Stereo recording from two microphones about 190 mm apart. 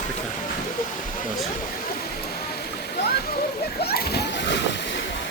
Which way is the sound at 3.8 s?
55° left (ahead or behind).